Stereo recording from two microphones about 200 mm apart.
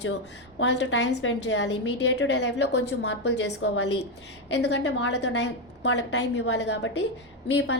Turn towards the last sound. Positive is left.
turn(degrees=60)  # may be behind; listen again after turning